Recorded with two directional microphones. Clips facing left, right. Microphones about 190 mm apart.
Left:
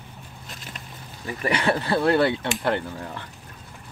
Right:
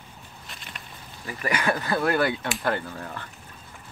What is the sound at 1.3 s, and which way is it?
Speech, 25° left (ahead or behind).